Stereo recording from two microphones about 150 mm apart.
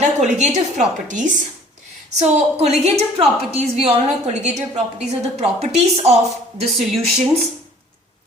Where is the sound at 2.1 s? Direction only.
45° right (ahead or behind).